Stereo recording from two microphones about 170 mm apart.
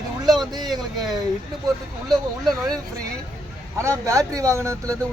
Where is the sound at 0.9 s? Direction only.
25° right (ahead or behind).